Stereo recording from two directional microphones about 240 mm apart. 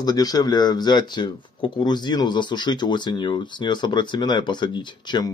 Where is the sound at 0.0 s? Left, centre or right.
Centre.